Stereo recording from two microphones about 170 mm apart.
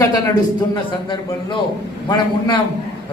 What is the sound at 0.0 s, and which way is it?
A man's voice, 20° left (ahead or behind).